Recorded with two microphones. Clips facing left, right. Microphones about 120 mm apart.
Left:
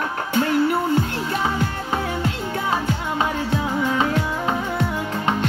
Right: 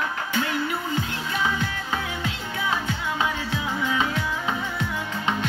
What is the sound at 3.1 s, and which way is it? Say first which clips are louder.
Music: left 5 dB; 45° left (ahead or behind).